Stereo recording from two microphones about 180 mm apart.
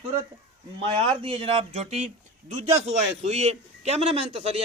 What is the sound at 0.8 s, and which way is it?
A man's voice, 30° right (ahead or behind).